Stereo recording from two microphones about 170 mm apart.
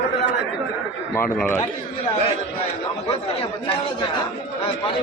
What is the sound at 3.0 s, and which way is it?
Speech, 35° left (ahead or behind).